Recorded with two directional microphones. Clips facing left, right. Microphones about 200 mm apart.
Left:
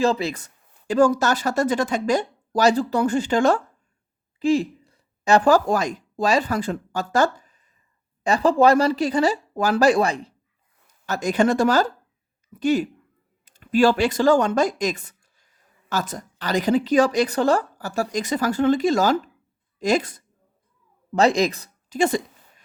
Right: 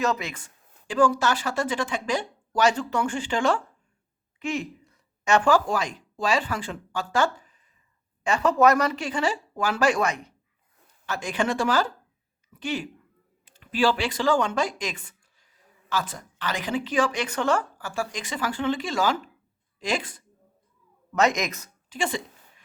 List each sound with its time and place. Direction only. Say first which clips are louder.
0.0 s a woman's voice: left 6 dB; 30° left (ahead or behind)